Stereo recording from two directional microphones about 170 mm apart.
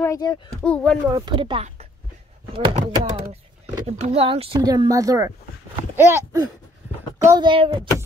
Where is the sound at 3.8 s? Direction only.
40° right (ahead or behind).